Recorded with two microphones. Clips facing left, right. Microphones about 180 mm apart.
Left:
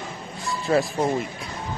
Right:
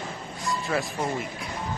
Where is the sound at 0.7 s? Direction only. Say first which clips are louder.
Left 8 dB; 35° left (ahead or behind).